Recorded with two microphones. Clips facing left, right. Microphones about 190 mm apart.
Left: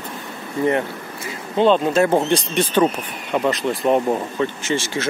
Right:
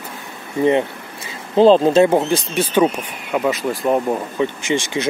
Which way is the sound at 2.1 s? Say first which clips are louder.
Right 1 dB; 5° right (ahead or behind).